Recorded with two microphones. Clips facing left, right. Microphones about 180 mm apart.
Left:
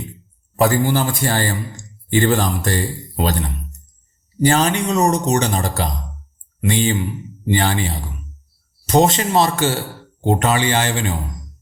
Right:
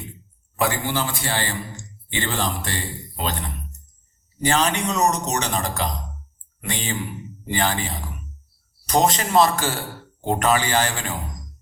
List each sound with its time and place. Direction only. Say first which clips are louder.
0.5 s speech: left 7 dB; 40° left (ahead or behind)
4.4 s speech: left 5 dB; 35° left (ahead or behind)